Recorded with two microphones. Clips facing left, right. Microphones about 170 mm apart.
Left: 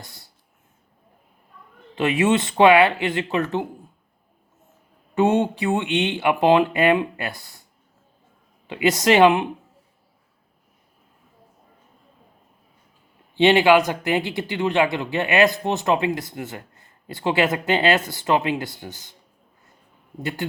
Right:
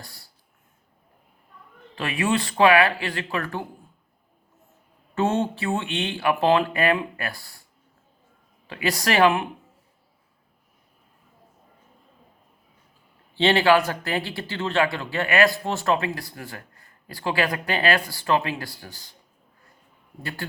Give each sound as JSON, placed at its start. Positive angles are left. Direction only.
{"t": 0.0, "sound": "a sound", "side_deg": 20}
{"t": 2.0, "sound": "speech", "side_deg": 20}
{"t": 5.1, "sound": "speech", "side_deg": 15}
{"t": 8.6, "sound": "speech", "side_deg": 20}
{"t": 13.3, "sound": "speech", "side_deg": 15}
{"t": 20.2, "sound": "speech", "side_deg": 20}